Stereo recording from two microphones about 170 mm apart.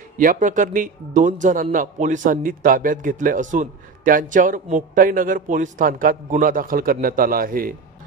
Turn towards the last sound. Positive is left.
turn(degrees=-55)  # may be behind; listen again after turning